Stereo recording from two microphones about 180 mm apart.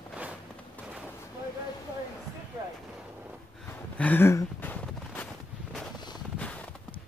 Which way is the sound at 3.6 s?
10° left (ahead or behind).